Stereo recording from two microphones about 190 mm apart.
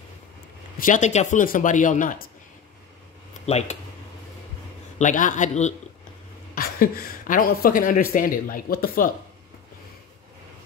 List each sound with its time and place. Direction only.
0.7 s speech: 45° left (ahead or behind)
3.4 s a man's voice: 35° left (ahead or behind)
4.9 s a man's voice: 40° left (ahead or behind)
6.5 s speech: 50° left (ahead or behind)